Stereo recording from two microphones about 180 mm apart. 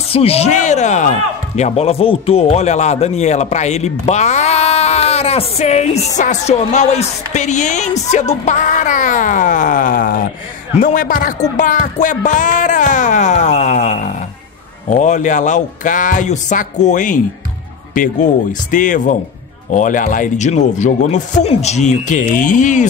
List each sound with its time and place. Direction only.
0.1 s speech: 35° left (ahead or behind)